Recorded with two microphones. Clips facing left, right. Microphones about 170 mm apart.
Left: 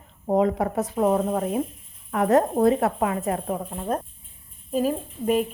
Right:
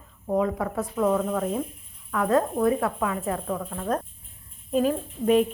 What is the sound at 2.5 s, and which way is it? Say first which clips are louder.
Speech: left 3 dB; 30° left (ahead or behind).